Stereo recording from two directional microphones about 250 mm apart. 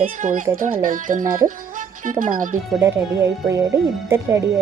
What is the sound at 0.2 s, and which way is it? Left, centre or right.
Speech, right.